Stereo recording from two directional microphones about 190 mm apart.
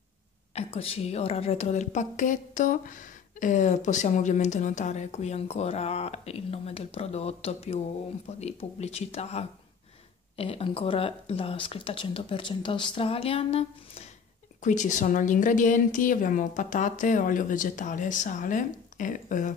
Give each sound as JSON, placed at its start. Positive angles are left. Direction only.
{"t": 0.6, "sound": "a woman's voice", "side_deg": 30}